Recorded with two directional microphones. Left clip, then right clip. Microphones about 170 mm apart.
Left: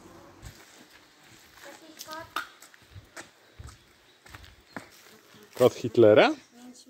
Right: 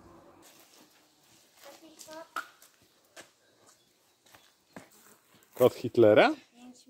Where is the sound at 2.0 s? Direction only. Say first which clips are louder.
Left 7 dB; 50° left (ahead or behind).